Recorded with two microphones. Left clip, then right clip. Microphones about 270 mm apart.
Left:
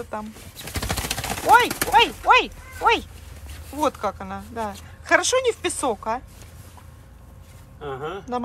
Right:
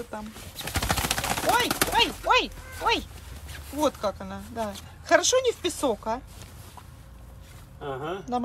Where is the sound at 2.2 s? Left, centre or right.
Centre.